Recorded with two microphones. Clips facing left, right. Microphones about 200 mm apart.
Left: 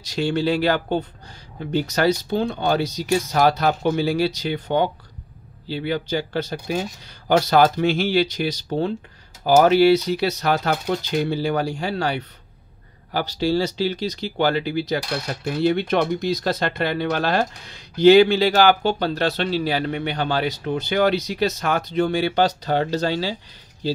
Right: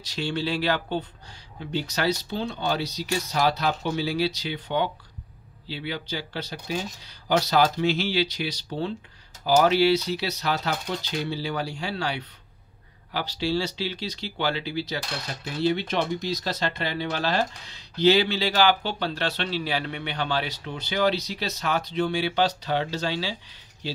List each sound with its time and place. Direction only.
0.1 s speech: 45° left (ahead or behind)